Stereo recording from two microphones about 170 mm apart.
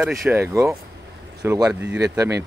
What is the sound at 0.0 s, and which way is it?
Speech, centre (ahead or behind).